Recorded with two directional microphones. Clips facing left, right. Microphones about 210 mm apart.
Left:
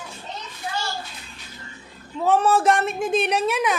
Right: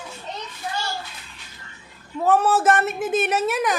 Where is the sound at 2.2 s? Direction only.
5° right (ahead or behind).